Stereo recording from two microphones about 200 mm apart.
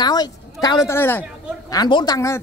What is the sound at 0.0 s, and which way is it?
A woman's voice, 20° left (ahead or behind).